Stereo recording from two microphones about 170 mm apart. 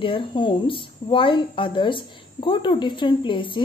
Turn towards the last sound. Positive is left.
turn(degrees=30)  # may be behind; listen again after turning